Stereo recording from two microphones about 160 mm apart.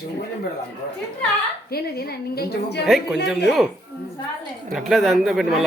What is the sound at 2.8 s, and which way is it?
Speech, 5° right (ahead or behind).